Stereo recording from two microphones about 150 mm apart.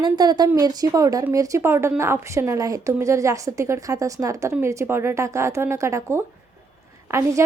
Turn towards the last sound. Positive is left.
turn(degrees=-15)  # may be behind; listen again after turning